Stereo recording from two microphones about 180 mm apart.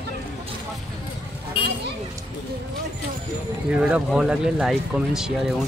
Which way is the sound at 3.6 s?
5° right (ahead or behind).